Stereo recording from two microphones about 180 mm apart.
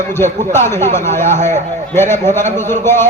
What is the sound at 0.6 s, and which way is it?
Speech, 40° right (ahead or behind).